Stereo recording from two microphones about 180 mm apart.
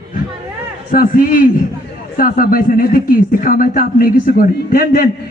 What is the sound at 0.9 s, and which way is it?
A man's voice, 50° left (ahead or behind).